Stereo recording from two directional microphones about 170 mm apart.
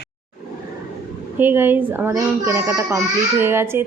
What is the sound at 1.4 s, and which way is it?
A woman's voice, 10° right (ahead or behind).